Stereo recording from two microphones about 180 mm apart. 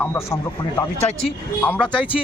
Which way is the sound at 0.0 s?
15° left (ahead or behind).